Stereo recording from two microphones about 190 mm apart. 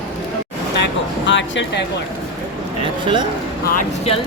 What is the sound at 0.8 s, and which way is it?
Speech, 70° left (ahead or behind).